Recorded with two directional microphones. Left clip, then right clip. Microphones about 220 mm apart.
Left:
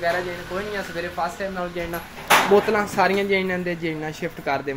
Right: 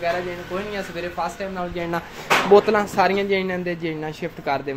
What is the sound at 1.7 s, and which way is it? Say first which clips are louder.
Speech: right 3 dB; 30° right (ahead or behind).